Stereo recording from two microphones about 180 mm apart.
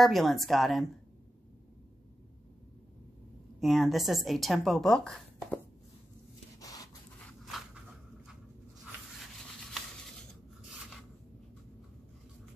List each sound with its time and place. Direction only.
0.0 s a woman's voice: centre (ahead or behind)
3.5 s a woman's voice: centre (ahead or behind)
6.6 s rub: 20° left (ahead or behind)